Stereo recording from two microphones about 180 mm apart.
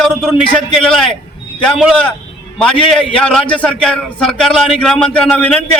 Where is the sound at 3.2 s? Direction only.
5° left (ahead or behind).